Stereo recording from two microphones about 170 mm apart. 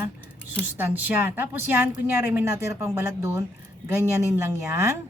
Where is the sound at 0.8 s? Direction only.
10° right (ahead or behind).